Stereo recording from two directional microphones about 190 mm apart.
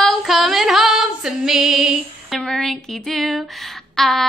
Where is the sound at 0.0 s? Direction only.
Centre (ahead or behind).